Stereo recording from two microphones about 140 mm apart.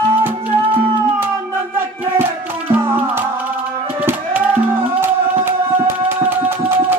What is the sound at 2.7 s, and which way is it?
Music, 15° right (ahead or behind).